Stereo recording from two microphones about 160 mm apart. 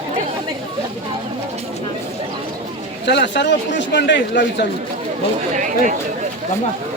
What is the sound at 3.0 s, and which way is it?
Speech, 90° left.